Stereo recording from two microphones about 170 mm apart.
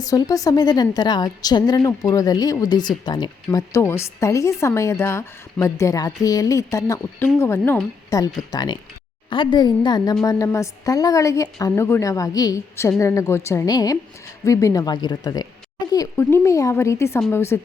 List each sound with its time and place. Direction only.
0.0 s a woman's voice: 20° left (ahead or behind)